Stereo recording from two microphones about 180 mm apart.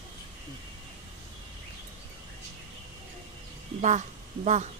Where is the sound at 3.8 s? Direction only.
40° right (ahead or behind).